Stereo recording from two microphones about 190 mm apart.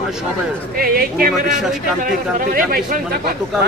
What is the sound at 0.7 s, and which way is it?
Speech, 50° right (ahead or behind).